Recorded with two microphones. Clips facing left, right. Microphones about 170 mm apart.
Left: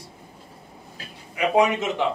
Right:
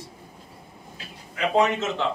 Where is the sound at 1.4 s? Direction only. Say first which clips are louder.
Left 2 dB; 15° left (ahead or behind).